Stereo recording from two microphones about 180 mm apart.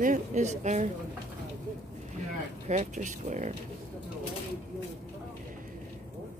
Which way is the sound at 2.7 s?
45° right (ahead or behind).